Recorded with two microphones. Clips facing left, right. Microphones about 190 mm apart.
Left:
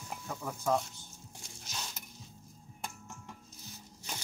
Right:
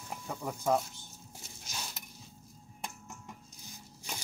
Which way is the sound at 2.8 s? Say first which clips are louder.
Even; centre (ahead or behind).